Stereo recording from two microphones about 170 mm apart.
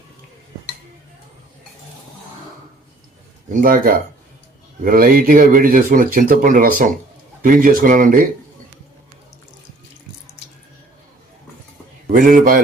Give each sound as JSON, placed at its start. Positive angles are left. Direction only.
{"t": 3.5, "sound": "speech", "side_deg": -55}
{"t": 12.0, "sound": "a man's voice", "side_deg": -50}